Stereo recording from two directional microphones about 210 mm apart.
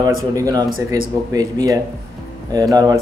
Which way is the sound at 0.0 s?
15° right (ahead or behind).